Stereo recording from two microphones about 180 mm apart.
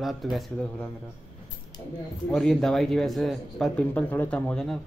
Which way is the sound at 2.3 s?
Centre (ahead or behind).